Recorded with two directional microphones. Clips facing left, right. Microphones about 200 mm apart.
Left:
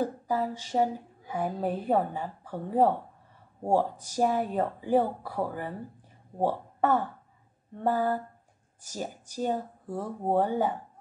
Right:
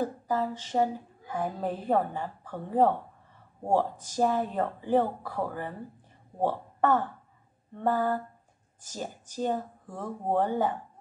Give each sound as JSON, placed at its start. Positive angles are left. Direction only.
{"t": 0.0, "sound": "a woman's voice", "side_deg": 10}